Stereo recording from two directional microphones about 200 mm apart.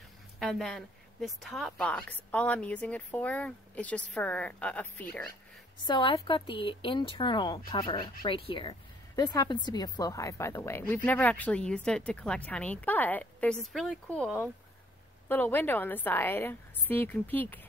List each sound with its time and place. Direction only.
0.4 s speech: centre (ahead or behind)
5.9 s speech: 25° left (ahead or behind)